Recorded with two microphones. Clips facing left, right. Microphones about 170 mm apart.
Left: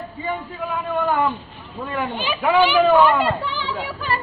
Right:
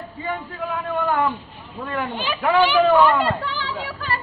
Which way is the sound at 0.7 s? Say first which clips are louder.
Left 1 dB; centre (ahead or behind).